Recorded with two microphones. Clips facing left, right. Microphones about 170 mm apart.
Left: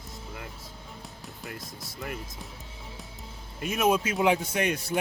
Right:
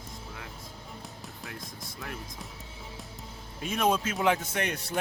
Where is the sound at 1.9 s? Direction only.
Centre (ahead or behind).